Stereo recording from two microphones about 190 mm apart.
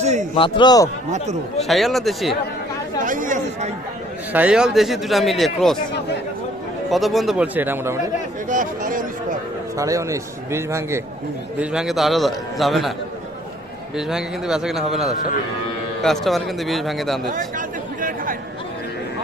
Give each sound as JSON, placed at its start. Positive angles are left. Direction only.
{"t": 0.0, "sound": "a man's voice", "side_deg": -35}
{"t": 0.3, "sound": "a man's voice", "side_deg": 25}
{"t": 1.6, "sound": "a man's voice", "side_deg": 0}
{"t": 3.0, "sound": "speech", "side_deg": -45}
{"t": 4.3, "sound": "a man's voice", "side_deg": -5}
{"t": 6.9, "sound": "a man's voice", "side_deg": 0}
{"t": 8.4, "sound": "speech", "side_deg": -45}
{"t": 9.7, "sound": "a man's voice", "side_deg": -15}
{"t": 13.9, "sound": "a man's voice", "side_deg": -5}
{"t": 16.2, "sound": "a man's voice", "side_deg": 0}
{"t": 17.2, "sound": "chatter", "side_deg": -45}